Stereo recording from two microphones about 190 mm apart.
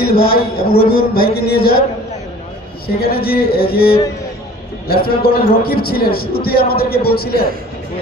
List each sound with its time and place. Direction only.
0.0 s a man's voice: 55° left (ahead or behind)
2.9 s a man's voice: 55° left (ahead or behind)